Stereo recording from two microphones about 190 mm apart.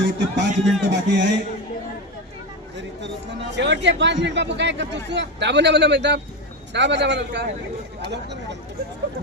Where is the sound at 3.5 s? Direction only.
65° right (ahead or behind).